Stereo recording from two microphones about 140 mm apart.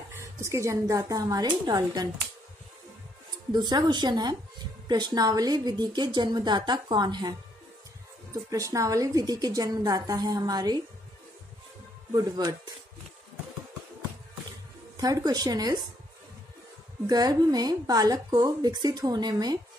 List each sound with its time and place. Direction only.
0.1 s speech: 20° right (ahead or behind)
3.5 s a woman's voice: 30° right (ahead or behind)
12.3 s speech: 30° right (ahead or behind)
15.0 s speech: 25° right (ahead or behind)
17.0 s speech: 25° right (ahead or behind)